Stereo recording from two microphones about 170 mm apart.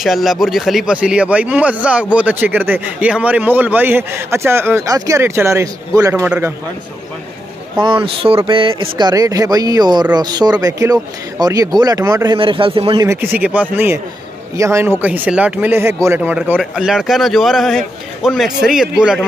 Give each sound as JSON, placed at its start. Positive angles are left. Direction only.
{"t": 0.0, "sound": "speech", "side_deg": 0}
{"t": 7.8, "sound": "speech", "side_deg": -30}
{"t": 12.4, "sound": "a man's voice", "side_deg": -30}
{"t": 13.0, "sound": "speech", "side_deg": -15}